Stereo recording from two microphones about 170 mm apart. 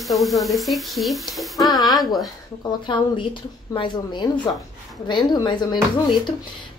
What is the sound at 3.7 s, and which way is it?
A woman's voice, 25° left (ahead or behind).